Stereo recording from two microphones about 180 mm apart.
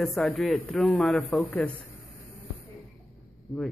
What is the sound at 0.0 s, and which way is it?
A man's voice, centre (ahead or behind).